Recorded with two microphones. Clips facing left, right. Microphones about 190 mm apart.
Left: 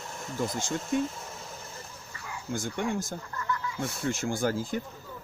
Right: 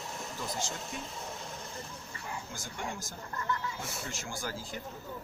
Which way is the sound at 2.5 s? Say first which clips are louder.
Left 15 dB; 55° left (ahead or behind).